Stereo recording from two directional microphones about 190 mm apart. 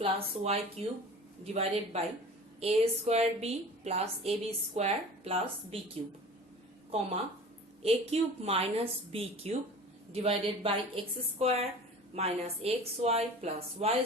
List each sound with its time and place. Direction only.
0.0 s a woman's voice: 30° right (ahead or behind)
7.8 s a woman's voice: 30° right (ahead or behind)